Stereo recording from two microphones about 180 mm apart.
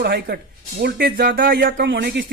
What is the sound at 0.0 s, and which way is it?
Speech, 55° right (ahead or behind).